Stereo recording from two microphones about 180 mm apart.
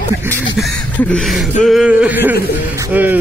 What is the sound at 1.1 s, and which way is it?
A man's voice, centre (ahead or behind).